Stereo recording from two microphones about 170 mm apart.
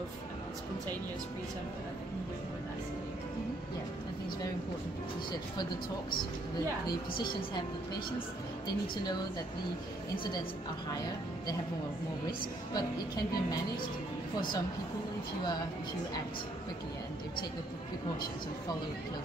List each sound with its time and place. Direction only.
12.7 s speech: 25° left (ahead or behind)